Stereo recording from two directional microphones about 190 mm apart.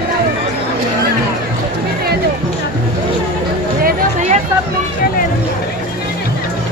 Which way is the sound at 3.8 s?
50° right (ahead or behind).